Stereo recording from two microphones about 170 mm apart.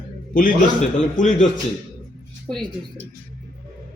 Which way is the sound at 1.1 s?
50° left (ahead or behind).